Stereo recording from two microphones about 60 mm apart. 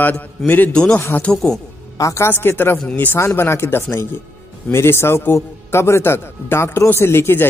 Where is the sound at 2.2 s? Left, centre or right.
Left.